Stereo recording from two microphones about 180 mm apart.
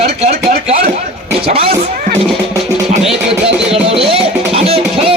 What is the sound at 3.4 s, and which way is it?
Speech, 35° right (ahead or behind).